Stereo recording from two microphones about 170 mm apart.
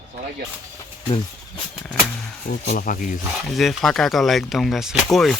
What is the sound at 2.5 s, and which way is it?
Speech, 50° left (ahead or behind).